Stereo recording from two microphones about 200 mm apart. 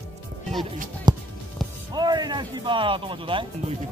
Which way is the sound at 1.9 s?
20° right (ahead or behind).